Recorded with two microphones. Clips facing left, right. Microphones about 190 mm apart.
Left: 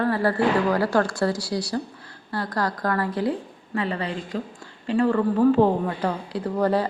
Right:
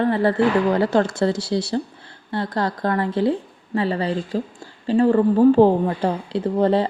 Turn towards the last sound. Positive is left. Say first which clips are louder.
# right 4 dB
turn(degrees=-25)  # may be behind; listen again after turning